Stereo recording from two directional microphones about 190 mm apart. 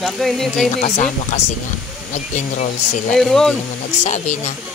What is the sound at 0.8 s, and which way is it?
Speech, 40° left (ahead or behind).